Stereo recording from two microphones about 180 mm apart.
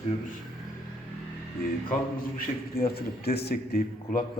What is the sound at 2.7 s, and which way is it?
A man's voice, 55° left (ahead or behind).